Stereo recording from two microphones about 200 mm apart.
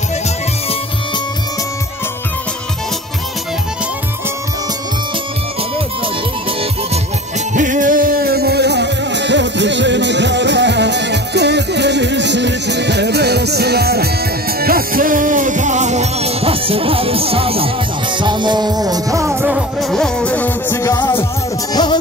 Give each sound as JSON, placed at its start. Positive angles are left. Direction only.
{"t": 7.5, "sound": "music", "side_deg": -40}